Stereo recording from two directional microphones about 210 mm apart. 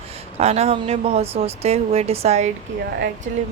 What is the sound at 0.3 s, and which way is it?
Speech, 30° right (ahead or behind).